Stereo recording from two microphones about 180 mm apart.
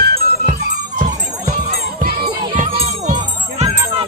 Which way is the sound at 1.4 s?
45° right (ahead or behind).